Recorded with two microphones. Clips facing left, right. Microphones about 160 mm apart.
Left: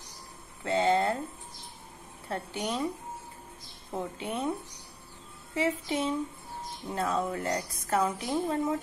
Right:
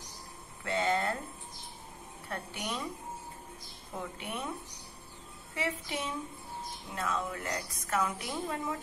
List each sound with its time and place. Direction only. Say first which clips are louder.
0.7 s a woman's voice: left 5 dB; 25° left (ahead or behind)
2.2 s a woman's voice: left 5 dB; 30° left (ahead or behind)
3.9 s a woman's voice: left 5 dB; 25° left (ahead or behind)
5.5 s a woman's voice: left 7 dB; 25° left (ahead or behind)